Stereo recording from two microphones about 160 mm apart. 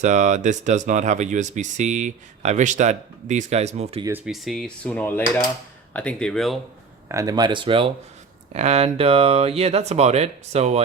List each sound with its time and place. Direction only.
0.0 s speech: 50° right (ahead or behind)
4.3 s speech: centre (ahead or behind)
7.1 s speech: 20° right (ahead or behind)
8.5 s speech: 45° right (ahead or behind)